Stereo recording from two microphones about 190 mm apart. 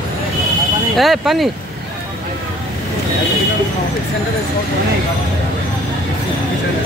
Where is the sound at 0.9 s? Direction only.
Centre (ahead or behind).